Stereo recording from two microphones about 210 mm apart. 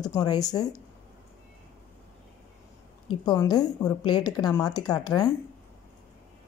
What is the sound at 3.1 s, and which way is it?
A woman's voice, 20° left (ahead or behind).